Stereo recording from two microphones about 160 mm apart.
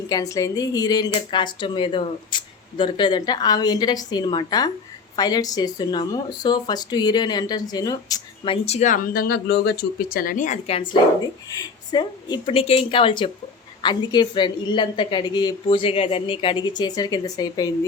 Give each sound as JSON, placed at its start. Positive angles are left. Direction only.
{"t": 0.1, "sound": "speech", "side_deg": 20}
{"t": 8.6, "sound": "speech", "side_deg": 45}
{"t": 11.5, "sound": "speech", "side_deg": 25}